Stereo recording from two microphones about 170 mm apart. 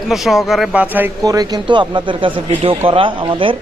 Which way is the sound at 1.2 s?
20° right (ahead or behind).